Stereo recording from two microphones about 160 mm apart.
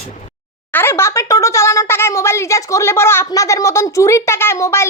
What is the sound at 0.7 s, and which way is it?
Speech, 15° left (ahead or behind).